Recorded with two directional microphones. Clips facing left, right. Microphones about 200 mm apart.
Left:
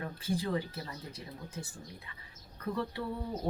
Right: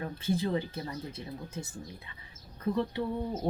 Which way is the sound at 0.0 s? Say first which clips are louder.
Right 4 dB; 25° right (ahead or behind).